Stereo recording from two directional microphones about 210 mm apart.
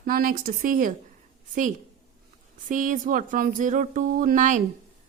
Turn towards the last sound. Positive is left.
turn(degrees=-35)  # may be behind; listen again after turning